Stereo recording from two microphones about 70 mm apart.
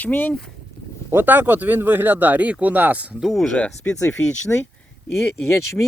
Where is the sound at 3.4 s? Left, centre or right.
Centre.